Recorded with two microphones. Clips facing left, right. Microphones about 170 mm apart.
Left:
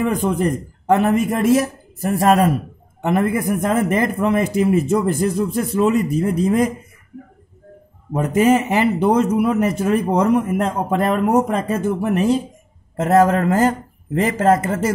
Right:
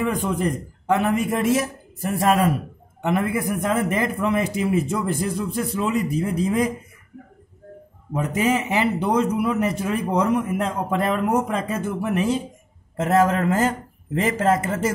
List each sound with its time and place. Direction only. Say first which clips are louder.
0.0 s a man's voice: left 4 dB; 45° left (ahead or behind)
8.1 s a man's voice: left 6 dB; 45° left (ahead or behind)